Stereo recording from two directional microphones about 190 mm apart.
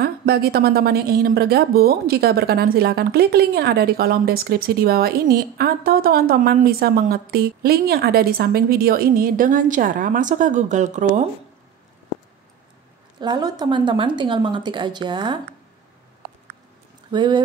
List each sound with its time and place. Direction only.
0.0 s a woman's voice: 55° right (ahead or behind); by 11.2 s 40° right (ahead or behind)
13.2 s a woman's voice: 20° right (ahead or behind)
17.1 s a woman's voice: 25° right (ahead or behind)